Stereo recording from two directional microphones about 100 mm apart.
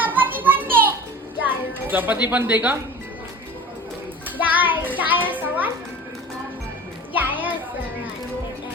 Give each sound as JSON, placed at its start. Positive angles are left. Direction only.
{"t": 0.0, "sound": "a sound", "side_deg": -20}
{"t": 1.9, "sound": "a child's voice", "side_deg": -20}
{"t": 4.4, "sound": "a child's voice", "side_deg": -15}
{"t": 7.1, "sound": "a child's voice", "side_deg": -15}